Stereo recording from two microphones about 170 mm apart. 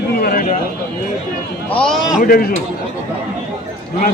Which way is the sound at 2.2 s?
60° left (ahead or behind).